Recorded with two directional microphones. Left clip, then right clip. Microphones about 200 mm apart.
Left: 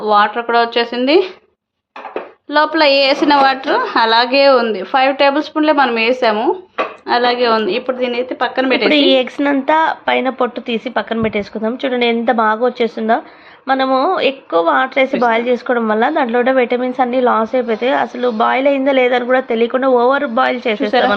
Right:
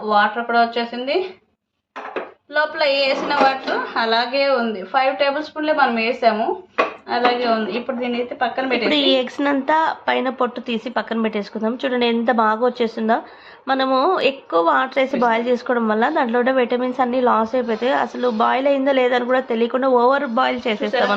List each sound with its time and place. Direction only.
0.0 s speech: 50° left (ahead or behind)
2.5 s a woman's voice: 65° left (ahead or behind)
8.9 s a woman's voice: 10° left (ahead or behind)